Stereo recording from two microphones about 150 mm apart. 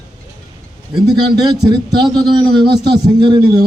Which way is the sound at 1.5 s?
30° right (ahead or behind).